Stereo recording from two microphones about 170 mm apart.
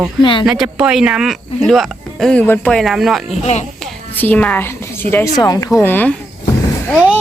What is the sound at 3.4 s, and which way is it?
Speech, 40° left (ahead or behind).